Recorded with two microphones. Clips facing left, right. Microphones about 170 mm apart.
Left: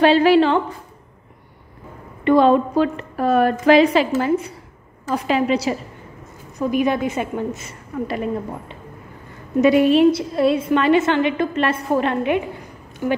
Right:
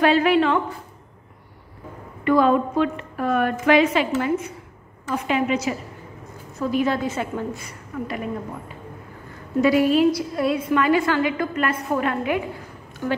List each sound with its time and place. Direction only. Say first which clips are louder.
0.0 s a woman's voice: left 4 dB; 30° left (ahead or behind)
2.2 s a woman's voice: left 4 dB; 25° left (ahead or behind)
6.6 s a woman's voice: left 3 dB; 15° left (ahead or behind)
9.6 s a woman's voice: left 4 dB; 20° left (ahead or behind)